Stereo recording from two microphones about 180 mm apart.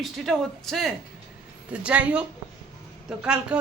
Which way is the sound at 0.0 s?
Centre (ahead or behind).